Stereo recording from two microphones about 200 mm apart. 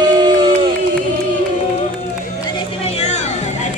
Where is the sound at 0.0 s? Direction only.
20° right (ahead or behind).